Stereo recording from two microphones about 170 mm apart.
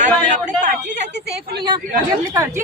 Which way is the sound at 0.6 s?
45° right (ahead or behind).